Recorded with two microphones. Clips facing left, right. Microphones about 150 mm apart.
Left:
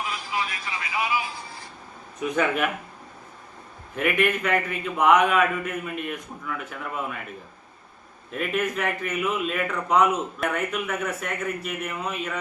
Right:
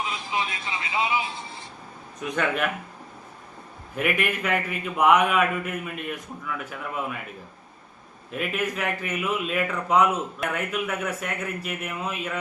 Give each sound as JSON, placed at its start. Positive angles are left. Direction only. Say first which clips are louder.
{"t": 0.0, "sound": "music", "louder": "right 1 dB", "side_deg": -20}
{"t": 2.3, "sound": "a man's voice", "louder": "left 2 dB", "side_deg": 0}
{"t": 3.9, "sound": "a man's voice", "louder": "left 3 dB", "side_deg": -5}
{"t": 8.3, "sound": "a man's voice", "louder": "left 2 dB", "side_deg": -5}